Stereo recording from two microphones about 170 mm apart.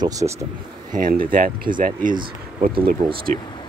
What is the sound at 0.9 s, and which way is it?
Speech, 55° right (ahead or behind).